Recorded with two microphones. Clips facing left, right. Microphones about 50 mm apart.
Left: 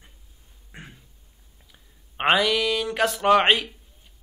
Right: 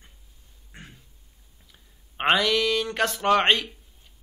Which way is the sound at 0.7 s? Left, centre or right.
Centre.